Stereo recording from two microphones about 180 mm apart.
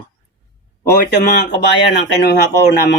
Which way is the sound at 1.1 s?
65° left (ahead or behind).